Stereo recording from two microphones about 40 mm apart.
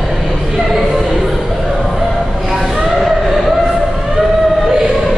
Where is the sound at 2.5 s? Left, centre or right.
Centre.